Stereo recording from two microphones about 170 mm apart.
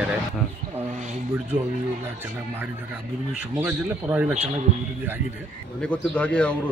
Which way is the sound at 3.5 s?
10° right (ahead or behind).